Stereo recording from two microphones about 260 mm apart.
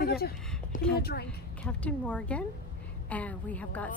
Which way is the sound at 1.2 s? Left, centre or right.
Centre.